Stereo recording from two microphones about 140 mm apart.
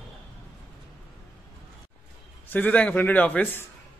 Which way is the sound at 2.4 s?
10° left (ahead or behind).